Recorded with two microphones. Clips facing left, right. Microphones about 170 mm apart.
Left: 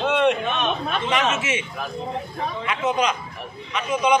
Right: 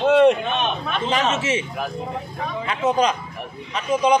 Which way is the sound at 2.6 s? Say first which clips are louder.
Right 3 dB; 30° right (ahead or behind).